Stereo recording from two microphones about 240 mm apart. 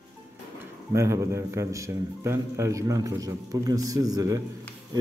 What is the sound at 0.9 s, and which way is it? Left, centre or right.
A man's voice, centre.